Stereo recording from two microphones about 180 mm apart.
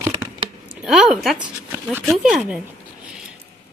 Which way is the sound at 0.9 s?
Centre (ahead or behind).